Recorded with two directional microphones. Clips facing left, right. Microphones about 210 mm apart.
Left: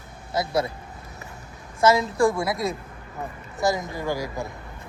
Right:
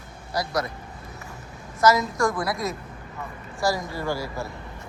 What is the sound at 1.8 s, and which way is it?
Speech, 30° left (ahead or behind).